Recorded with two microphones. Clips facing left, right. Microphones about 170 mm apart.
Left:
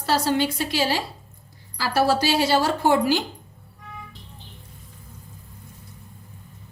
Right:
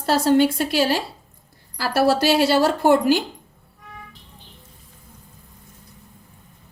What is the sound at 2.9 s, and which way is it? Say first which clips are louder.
Speech: right 3 dB; 45° right (ahead or behind).